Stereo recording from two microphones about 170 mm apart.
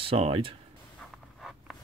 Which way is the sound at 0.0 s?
30° right (ahead or behind).